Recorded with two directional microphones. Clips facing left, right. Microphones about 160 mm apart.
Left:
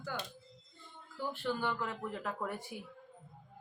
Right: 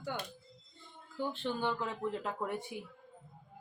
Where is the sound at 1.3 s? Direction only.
20° right (ahead or behind).